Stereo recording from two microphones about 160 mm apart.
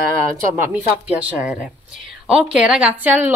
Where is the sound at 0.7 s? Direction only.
10° right (ahead or behind).